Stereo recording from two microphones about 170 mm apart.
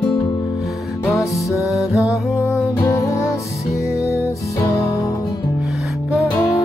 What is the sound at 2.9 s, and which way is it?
Music, 20° left (ahead or behind).